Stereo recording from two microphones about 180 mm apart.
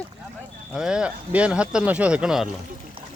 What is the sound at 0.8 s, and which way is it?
Speech, 5° right (ahead or behind).